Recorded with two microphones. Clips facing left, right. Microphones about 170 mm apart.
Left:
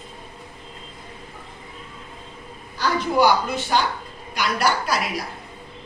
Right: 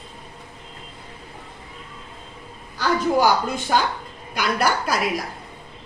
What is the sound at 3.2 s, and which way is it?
A woman's voice, 50° right (ahead or behind).